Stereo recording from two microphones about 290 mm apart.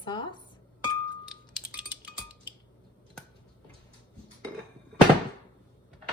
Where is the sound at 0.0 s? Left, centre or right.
Centre.